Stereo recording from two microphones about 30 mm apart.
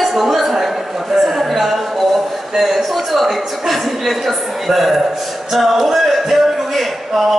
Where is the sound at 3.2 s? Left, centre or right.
Centre.